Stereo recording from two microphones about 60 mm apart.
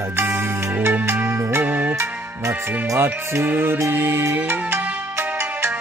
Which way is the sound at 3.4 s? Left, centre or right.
Right.